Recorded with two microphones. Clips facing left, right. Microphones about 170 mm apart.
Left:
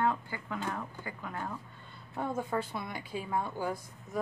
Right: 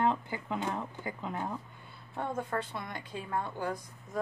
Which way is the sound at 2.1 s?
5° left (ahead or behind).